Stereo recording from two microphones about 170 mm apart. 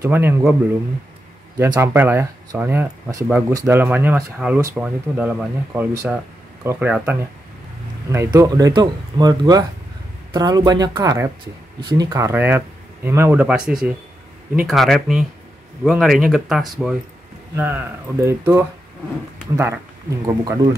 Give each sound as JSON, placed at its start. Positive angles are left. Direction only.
{"t": 0.0, "sound": "speech", "side_deg": -15}
{"t": 1.6, "sound": "speech", "side_deg": -15}
{"t": 17.6, "sound": "speech", "side_deg": -15}